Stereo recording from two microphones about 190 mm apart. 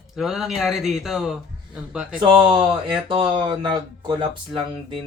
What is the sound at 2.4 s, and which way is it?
Speech, 25° right (ahead or behind).